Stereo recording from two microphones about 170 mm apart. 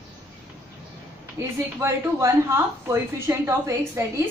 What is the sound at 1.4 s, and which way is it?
Speech, 15° right (ahead or behind).